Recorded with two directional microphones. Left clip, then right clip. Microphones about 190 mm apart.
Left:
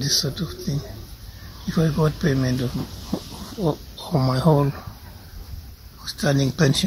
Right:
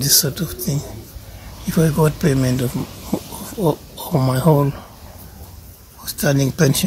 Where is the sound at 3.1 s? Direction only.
20° right (ahead or behind).